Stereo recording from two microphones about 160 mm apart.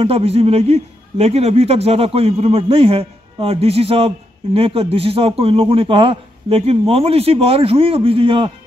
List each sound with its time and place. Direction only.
0.0 s a man's voice: 40° right (ahead or behind)